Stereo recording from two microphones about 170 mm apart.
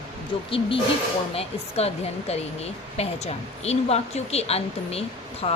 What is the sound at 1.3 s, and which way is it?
A woman's voice, 35° left (ahead or behind).